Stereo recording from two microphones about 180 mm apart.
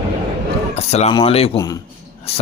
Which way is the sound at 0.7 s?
35° left (ahead or behind).